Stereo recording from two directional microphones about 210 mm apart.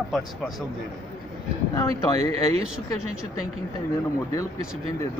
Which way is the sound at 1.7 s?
15° left (ahead or behind).